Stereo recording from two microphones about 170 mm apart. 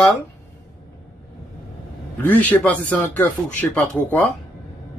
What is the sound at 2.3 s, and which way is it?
Speech, 10° left (ahead or behind).